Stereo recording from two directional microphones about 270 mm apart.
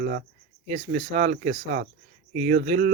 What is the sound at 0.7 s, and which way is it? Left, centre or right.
Speech, right.